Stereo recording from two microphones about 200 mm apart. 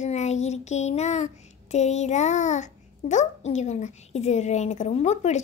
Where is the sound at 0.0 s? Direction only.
35° left (ahead or behind).